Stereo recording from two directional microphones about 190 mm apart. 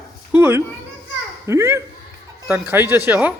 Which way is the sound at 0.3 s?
10° right (ahead or behind).